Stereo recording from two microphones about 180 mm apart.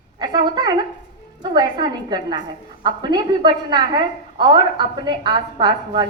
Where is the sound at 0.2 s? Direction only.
25° right (ahead or behind).